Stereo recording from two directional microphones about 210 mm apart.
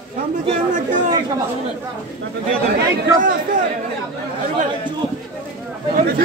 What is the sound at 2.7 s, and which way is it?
Speech, 40° right (ahead or behind).